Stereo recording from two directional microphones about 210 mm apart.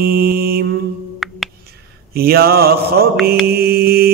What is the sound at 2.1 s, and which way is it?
Mantra, 45° right (ahead or behind).